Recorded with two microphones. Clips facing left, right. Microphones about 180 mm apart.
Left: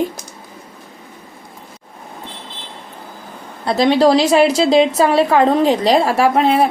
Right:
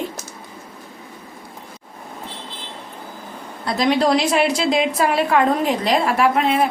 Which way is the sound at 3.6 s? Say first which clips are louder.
Left 5 dB; 30° left (ahead or behind).